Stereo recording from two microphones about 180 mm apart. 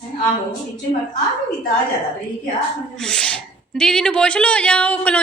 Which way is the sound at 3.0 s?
5° left (ahead or behind).